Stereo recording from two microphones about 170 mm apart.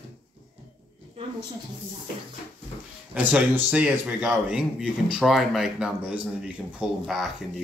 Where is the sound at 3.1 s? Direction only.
10° right (ahead or behind).